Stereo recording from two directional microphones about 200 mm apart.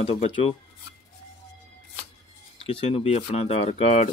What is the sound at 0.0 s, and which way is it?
Speech, 30° left (ahead or behind).